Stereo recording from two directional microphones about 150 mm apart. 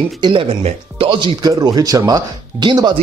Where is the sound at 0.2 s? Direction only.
35° right (ahead or behind).